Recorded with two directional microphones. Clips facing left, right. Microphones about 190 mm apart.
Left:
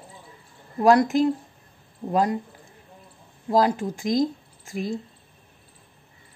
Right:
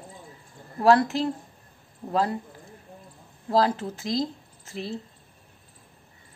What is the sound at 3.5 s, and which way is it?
A woman's voice, 15° left (ahead or behind).